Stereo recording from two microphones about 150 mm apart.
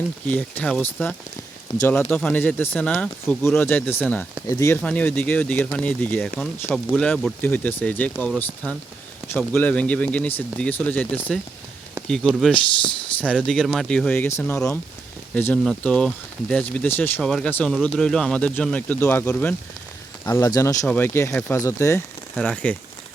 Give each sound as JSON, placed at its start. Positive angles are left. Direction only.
{"t": 0.3, "sound": "speech", "side_deg": 10}
{"t": 1.7, "sound": "speech", "side_deg": 35}
{"t": 2.0, "sound": "speech", "side_deg": 10}
{"t": 20.2, "sound": "speech", "side_deg": 25}
{"t": 20.8, "sound": "speech", "side_deg": 15}